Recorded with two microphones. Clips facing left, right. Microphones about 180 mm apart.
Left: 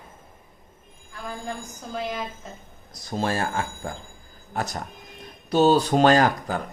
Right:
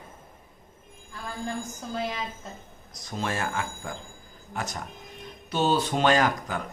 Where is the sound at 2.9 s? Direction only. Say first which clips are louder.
Left 5 dB; 35° left (ahead or behind).